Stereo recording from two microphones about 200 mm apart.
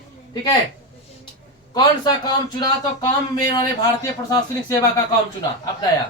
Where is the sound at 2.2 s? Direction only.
20° left (ahead or behind).